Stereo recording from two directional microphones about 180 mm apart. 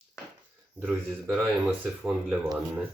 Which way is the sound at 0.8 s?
10° right (ahead or behind).